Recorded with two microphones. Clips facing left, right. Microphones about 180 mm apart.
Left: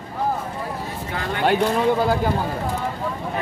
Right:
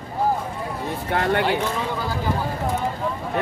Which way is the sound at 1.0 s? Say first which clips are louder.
Right 8 dB; 60° right (ahead or behind).